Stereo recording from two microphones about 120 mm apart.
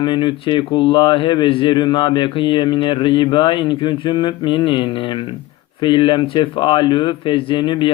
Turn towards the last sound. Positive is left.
turn(degrees=40)  # may be behind; listen again after turning